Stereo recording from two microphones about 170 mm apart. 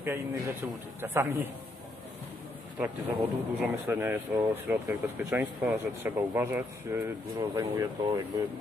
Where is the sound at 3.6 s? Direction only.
10° right (ahead or behind).